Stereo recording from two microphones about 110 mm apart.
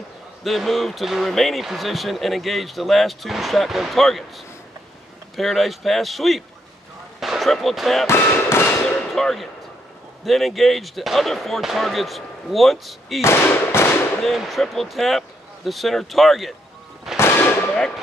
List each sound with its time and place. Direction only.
0.4 s speech: centre (ahead or behind)
5.3 s speech: centre (ahead or behind)
8.1 s fireworks: 20° left (ahead or behind)
9.1 s speech: centre (ahead or behind)
13.2 s firecracker: 25° left (ahead or behind)
14.2 s speech: centre (ahead or behind)
17.2 s a sound: 20° left (ahead or behind)